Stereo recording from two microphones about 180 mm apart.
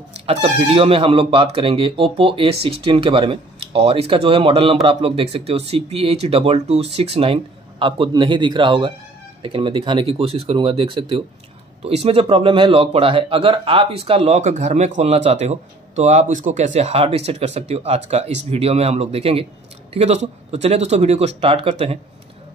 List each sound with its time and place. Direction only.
0.1 s a man's voice: 35° right (ahead or behind)